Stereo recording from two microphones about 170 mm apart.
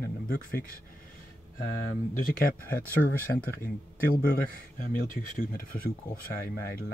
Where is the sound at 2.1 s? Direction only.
55° left (ahead or behind).